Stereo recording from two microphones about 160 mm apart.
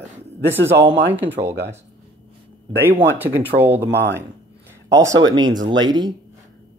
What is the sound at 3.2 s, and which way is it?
Speech, 10° right (ahead or behind).